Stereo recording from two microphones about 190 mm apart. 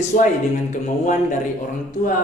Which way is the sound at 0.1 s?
45° left (ahead or behind).